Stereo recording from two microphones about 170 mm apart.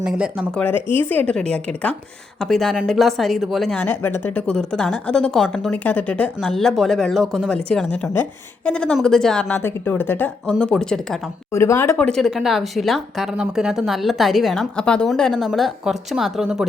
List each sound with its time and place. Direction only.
0.0 s speech: 5° right (ahead or behind)
0.6 s speech: 10° left (ahead or behind)
11.5 s speech: 15° left (ahead or behind)
12.0 s speech: centre (ahead or behind)